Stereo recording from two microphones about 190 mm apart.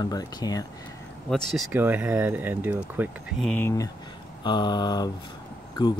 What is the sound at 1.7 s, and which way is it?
Speech, 10° right (ahead or behind).